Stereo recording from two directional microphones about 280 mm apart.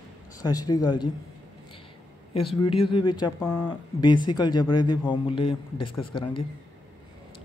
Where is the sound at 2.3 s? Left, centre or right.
Centre.